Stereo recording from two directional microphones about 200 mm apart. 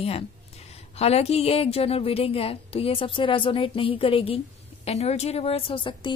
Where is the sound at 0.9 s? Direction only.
30° left (ahead or behind).